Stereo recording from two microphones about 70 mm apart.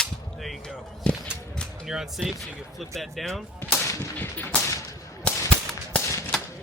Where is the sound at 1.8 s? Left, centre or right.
Centre.